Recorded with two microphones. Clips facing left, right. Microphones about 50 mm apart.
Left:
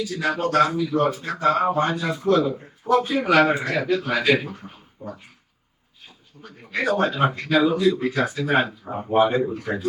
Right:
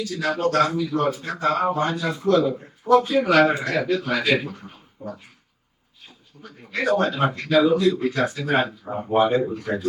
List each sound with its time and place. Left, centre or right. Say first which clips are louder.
0.0 s a man's voice: right 1 dB; centre
1.7 s a man's voice: left 1 dB; left
6.7 s a man's voice: even; centre